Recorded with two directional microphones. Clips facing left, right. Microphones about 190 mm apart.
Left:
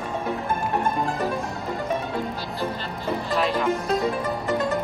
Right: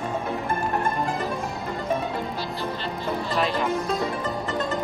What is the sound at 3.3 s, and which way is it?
Music, centre (ahead or behind).